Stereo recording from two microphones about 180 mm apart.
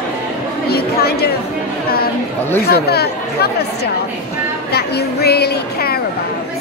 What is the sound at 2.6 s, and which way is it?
A woman's voice, 60° left (ahead or behind).